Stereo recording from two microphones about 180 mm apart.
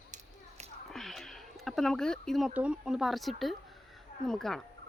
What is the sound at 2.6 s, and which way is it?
A woman's voice, 5° right (ahead or behind).